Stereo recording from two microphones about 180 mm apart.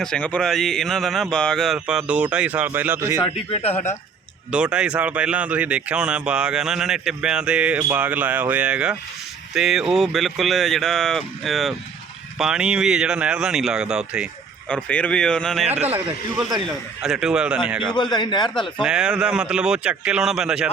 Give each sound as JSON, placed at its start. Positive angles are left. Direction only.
{"t": 0.0, "sound": "speech", "side_deg": 5}
{"t": 3.5, "sound": "a man's voice", "side_deg": 35}
{"t": 4.5, "sound": "speech", "side_deg": -5}
{"t": 14.7, "sound": "speech", "side_deg": 10}
{"t": 16.6, "sound": "speech", "side_deg": -5}
{"t": 17.9, "sound": "a man's voice", "side_deg": 25}
{"t": 18.8, "sound": "speech", "side_deg": -5}